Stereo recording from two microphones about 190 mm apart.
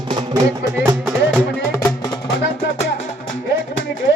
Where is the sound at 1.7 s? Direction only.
20° left (ahead or behind).